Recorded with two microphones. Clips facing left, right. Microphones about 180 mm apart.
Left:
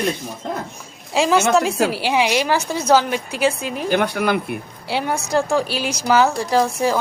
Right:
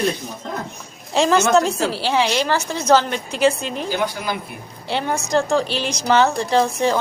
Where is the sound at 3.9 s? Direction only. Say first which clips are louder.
Left 7 dB; 65° left (ahead or behind).